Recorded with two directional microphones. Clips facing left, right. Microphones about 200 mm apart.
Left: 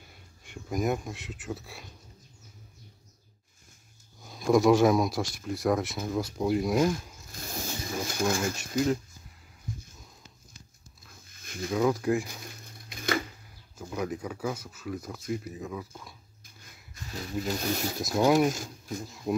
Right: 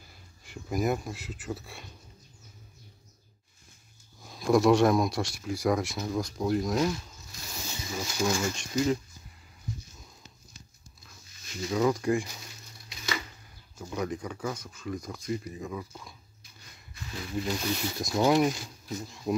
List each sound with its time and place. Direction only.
0.4 s speech: 5° right (ahead or behind)
4.2 s speech: centre (ahead or behind)
7.3 s a sound: 55° left (ahead or behind)
11.2 s a sound: 55° left (ahead or behind)
11.7 s speech: 5° left (ahead or behind)
12.3 s crushing: 55° left (ahead or behind)
13.7 s speech: 5° left (ahead or behind)
16.9 s speech: 40° left (ahead or behind)
17.9 s speech: 5° left (ahead or behind)
18.5 s speech: 50° left (ahead or behind)
19.0 s speech: centre (ahead or behind)